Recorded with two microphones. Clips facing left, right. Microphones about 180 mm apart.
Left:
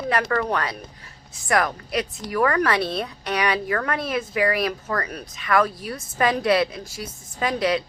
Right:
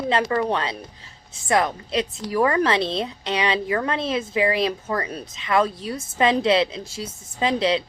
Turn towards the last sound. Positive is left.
turn(degrees=-25)  # may be behind; listen again after turning